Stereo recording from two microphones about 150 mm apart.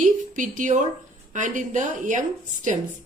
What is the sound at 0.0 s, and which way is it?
A woman's voice, 60° right (ahead or behind).